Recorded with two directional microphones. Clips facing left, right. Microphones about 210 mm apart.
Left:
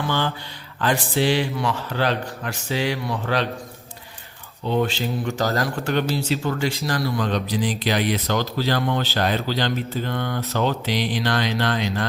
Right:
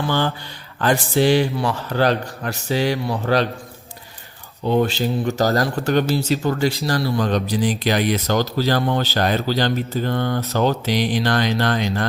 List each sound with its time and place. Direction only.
0.8 s speech: 45° right (ahead or behind)
4.6 s speech: 40° right (ahead or behind)